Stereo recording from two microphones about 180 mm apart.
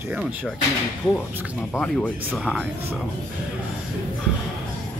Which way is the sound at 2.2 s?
5° right (ahead or behind).